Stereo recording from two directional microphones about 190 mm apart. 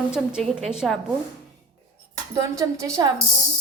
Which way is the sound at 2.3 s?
15° right (ahead or behind).